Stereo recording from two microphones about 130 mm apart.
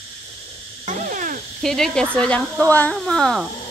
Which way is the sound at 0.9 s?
75° right (ahead or behind).